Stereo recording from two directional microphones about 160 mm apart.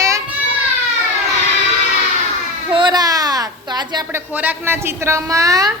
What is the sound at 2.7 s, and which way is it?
A child's voice, 30° right (ahead or behind).